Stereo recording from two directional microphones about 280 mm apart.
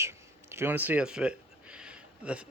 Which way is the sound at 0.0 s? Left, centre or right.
Centre.